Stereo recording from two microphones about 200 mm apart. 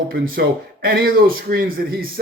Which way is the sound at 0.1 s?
50° right (ahead or behind).